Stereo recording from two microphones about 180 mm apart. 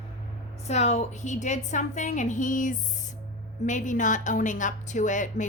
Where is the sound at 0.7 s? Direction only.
40° left (ahead or behind).